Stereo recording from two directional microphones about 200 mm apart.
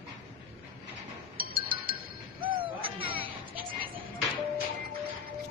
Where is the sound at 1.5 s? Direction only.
25° right (ahead or behind).